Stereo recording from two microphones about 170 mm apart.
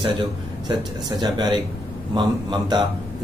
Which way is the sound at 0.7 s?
25° right (ahead or behind).